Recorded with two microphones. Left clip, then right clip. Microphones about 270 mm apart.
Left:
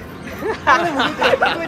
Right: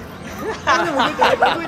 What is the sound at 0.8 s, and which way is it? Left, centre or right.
Speech, right.